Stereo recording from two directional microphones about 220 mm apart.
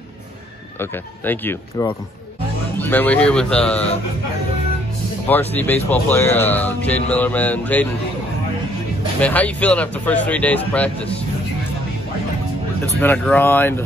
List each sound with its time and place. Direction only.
0.7 s speech: 10° left (ahead or behind)
5.3 s speech: 10° left (ahead or behind)
9.2 s speech: 5° left (ahead or behind)
13.0 s speech: 5° left (ahead or behind)